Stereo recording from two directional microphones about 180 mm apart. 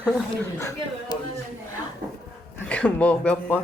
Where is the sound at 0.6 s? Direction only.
20° left (ahead or behind).